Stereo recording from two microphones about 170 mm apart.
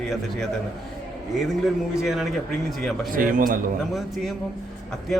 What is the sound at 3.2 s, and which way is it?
Speech, 50° right (ahead or behind).